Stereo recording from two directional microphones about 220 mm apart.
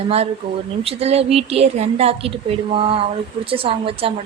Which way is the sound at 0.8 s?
25° right (ahead or behind).